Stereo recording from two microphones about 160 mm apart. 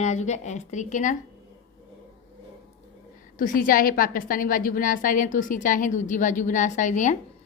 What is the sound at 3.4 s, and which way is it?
A woman's voice, 60° left (ahead or behind).